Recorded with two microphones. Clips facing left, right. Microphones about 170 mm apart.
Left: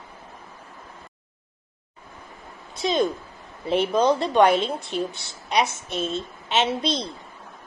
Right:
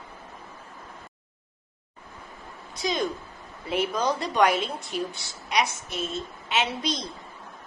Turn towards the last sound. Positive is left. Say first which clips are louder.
# left 4 dB
turn(degrees=30)  # may be behind; listen again after turning